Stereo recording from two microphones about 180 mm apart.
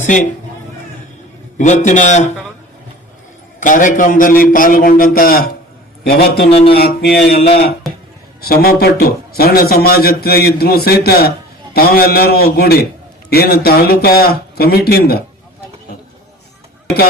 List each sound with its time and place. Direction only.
0.0 s a man's voice: 45° left (ahead or behind)
1.5 s a man's voice: 40° left (ahead or behind)
3.6 s a man's voice: 45° left (ahead or behind)
6.5 s a man's voice: 30° left (ahead or behind)
6.8 s a man's voice: 65° left (ahead or behind)
7.9 s a sound: centre (ahead or behind)
8.4 s a man's voice: 60° left (ahead or behind)